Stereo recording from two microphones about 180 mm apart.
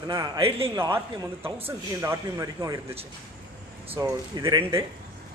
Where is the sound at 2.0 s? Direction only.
15° right (ahead or behind).